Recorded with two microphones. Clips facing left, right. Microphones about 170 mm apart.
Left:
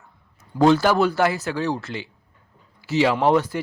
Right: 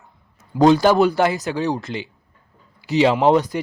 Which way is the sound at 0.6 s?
15° right (ahead or behind).